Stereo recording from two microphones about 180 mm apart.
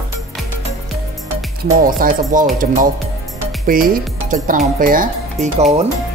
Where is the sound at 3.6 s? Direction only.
50° right (ahead or behind).